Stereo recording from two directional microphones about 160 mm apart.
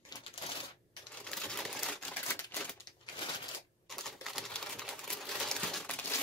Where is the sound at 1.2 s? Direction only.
5° left (ahead or behind).